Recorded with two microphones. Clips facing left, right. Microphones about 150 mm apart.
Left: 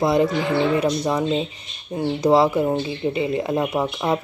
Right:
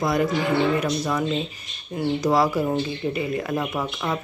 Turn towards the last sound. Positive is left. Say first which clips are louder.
# left 5 dB
turn(degrees=25)  # may be behind; listen again after turning